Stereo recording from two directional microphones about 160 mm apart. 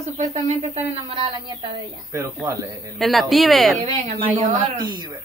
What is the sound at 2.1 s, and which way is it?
Speech, 20° right (ahead or behind).